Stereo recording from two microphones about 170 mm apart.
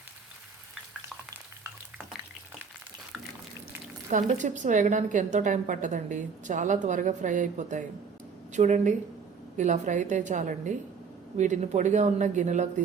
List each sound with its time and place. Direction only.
4.1 s a woman's voice: 45° right (ahead or behind)